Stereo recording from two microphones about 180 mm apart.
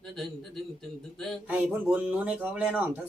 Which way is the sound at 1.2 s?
5° right (ahead or behind).